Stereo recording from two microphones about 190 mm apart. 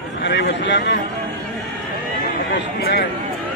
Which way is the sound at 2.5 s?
55° left (ahead or behind).